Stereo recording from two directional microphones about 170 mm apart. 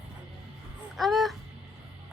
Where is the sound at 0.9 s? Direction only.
Centre (ahead or behind).